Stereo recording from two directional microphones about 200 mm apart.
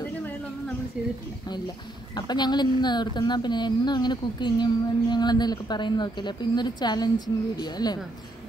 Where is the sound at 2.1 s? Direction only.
20° left (ahead or behind).